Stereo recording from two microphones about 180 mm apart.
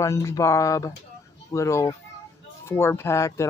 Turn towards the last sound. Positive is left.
turn(degrees=15)  # may be behind; listen again after turning